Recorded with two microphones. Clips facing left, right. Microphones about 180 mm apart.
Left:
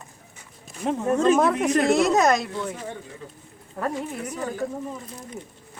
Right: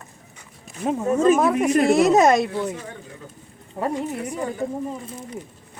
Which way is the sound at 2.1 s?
25° right (ahead or behind).